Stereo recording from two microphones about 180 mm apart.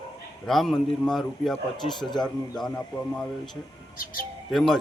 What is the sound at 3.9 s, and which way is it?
Speech, 55° left (ahead or behind).